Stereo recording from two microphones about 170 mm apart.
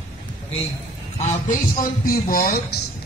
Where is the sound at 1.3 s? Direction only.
50° left (ahead or behind).